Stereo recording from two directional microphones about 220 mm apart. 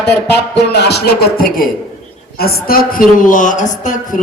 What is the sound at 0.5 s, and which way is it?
A woman's voice, 50° left (ahead or behind).